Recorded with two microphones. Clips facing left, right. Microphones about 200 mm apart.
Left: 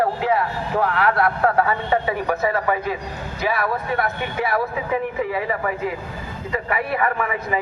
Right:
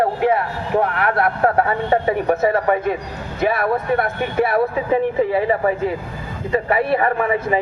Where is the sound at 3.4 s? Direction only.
55° right (ahead or behind).